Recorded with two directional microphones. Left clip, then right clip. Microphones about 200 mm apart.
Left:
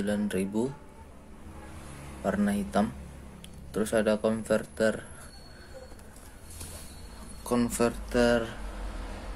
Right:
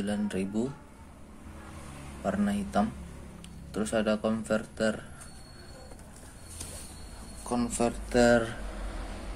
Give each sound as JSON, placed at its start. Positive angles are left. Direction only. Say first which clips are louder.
{"t": 0.0, "sound": "a man's voice", "louder": "left 3 dB", "side_deg": 15}
{"t": 2.2, "sound": "a man's voice", "louder": "left 2 dB", "side_deg": 15}
{"t": 7.4, "sound": "speech", "louder": "left 3 dB", "side_deg": 25}
{"t": 8.1, "sound": "speech", "louder": "right 4 dB", "side_deg": -10}